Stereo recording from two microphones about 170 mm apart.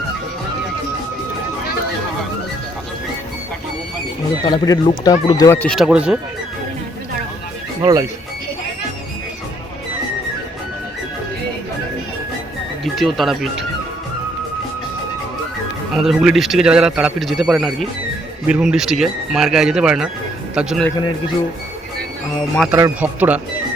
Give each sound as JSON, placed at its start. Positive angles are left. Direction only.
{"t": 4.4, "sound": "speech", "side_deg": 20}
{"t": 5.5, "sound": "speech", "side_deg": 5}
{"t": 5.8, "sound": "speech", "side_deg": -5}
{"t": 7.8, "sound": "speech", "side_deg": -20}
{"t": 12.8, "sound": "speech", "side_deg": 0}
{"t": 16.0, "sound": "speech", "side_deg": 0}
{"t": 22.7, "sound": "speech", "side_deg": -10}